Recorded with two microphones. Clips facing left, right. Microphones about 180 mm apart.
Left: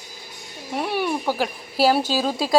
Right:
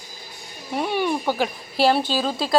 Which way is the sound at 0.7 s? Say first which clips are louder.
Right 1 dB; 5° left (ahead or behind).